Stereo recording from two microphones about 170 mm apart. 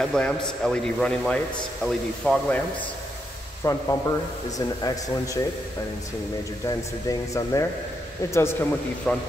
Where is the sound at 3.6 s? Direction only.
20° left (ahead or behind).